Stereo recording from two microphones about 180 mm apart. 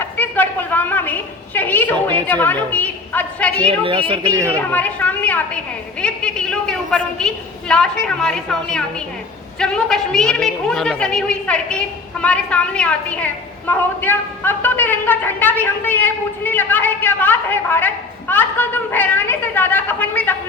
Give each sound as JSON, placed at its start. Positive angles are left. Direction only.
{"t": 0.2, "sound": "a sound", "side_deg": 10}
{"t": 2.6, "sound": "a woman's voice", "side_deg": 10}
{"t": 3.7, "sound": "a woman's voice", "side_deg": -30}
{"t": 4.5, "sound": "a woman's voice", "side_deg": 10}